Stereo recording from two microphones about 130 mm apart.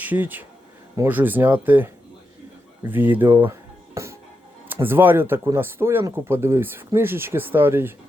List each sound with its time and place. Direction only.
0.0 s speech: 15° right (ahead or behind)
3.9 s music: 20° right (ahead or behind)
4.9 s speech: 15° right (ahead or behind)